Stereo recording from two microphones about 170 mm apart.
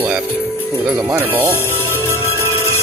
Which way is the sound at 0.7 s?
10° right (ahead or behind).